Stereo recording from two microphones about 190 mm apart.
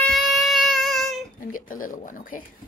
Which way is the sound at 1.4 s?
45° left (ahead or behind).